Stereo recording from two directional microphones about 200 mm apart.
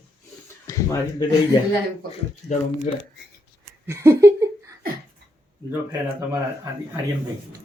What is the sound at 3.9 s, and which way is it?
Speech, 15° right (ahead or behind).